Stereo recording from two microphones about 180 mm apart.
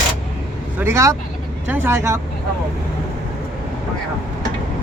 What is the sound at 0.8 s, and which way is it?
Speech, 15° right (ahead or behind).